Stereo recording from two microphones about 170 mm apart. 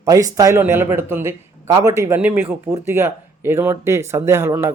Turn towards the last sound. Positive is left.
turn(degrees=-15)  # may be behind; listen again after turning